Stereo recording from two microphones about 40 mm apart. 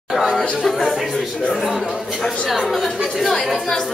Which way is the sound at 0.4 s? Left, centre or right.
Centre.